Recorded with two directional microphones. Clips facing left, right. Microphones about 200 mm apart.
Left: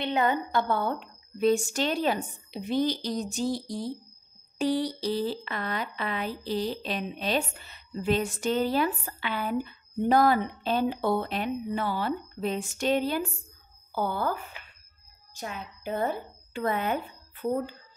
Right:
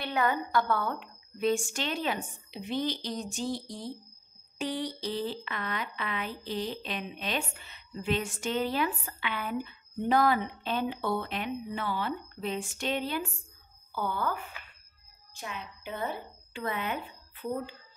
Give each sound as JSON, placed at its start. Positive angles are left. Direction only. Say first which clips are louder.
{"t": 0.0, "sound": "a woman's voice", "louder": "left 3 dB", "side_deg": 25}